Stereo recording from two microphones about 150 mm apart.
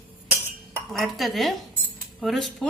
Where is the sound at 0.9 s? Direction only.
Centre (ahead or behind).